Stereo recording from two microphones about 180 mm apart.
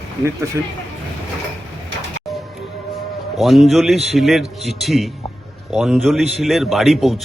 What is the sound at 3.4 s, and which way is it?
A man's voice, centre (ahead or behind).